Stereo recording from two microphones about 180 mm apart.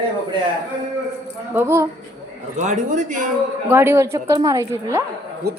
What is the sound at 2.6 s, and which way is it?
Speech, 40° right (ahead or behind).